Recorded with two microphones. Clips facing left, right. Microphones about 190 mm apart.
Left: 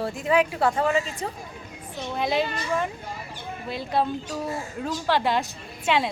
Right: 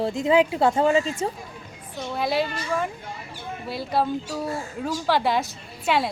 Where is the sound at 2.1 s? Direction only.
5° right (ahead or behind).